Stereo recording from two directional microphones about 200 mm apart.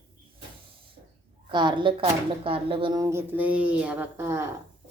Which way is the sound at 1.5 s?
25° right (ahead or behind).